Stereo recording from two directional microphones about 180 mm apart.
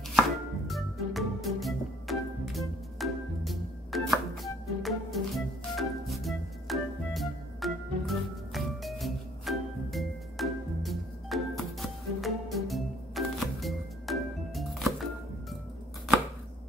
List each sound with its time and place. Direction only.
0.7 s music: centre (ahead or behind)